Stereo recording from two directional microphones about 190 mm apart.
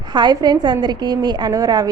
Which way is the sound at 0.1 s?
20° right (ahead or behind).